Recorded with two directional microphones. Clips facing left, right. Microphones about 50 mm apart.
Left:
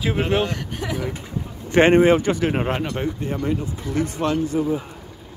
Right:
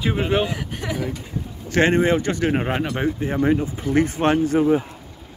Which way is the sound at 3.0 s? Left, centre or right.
Centre.